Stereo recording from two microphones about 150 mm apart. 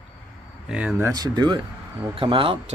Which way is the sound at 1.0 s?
25° right (ahead or behind).